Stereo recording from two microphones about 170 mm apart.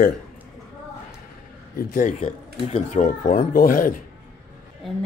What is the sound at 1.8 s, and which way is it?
Speech, 50° left (ahead or behind).